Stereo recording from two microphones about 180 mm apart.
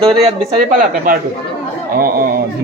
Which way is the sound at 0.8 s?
50° right (ahead or behind).